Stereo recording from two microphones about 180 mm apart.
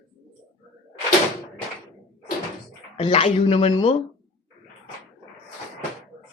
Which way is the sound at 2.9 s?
30° left (ahead or behind).